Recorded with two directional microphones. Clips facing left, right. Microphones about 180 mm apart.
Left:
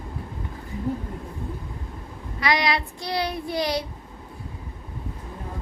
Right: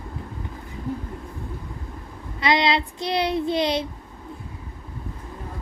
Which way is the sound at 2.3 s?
25° right (ahead or behind).